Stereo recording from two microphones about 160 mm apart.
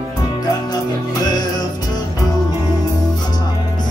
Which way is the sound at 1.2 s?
25° left (ahead or behind).